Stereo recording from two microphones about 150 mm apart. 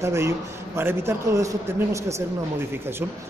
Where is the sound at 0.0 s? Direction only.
20° right (ahead or behind).